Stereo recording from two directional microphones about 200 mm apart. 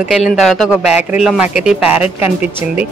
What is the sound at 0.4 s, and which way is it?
Speech, centre (ahead or behind).